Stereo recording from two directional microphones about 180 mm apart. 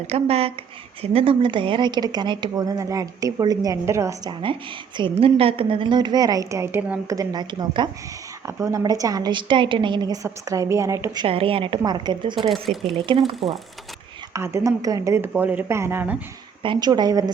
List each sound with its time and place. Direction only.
0.1 s speech: 35° right (ahead or behind); by 7.2 s 10° right (ahead or behind)
7.2 s speech: 25° right (ahead or behind)
12.4 s speech: centre (ahead or behind)
12.9 s speech: 30° right (ahead or behind)
14.3 s speech: 15° right (ahead or behind)
16.6 s speech: 25° right (ahead or behind)